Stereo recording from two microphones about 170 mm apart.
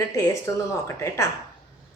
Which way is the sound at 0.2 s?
15° left (ahead or behind).